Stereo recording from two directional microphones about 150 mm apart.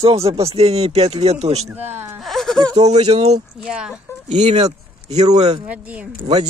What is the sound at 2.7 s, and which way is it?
Speech, 45° right (ahead or behind).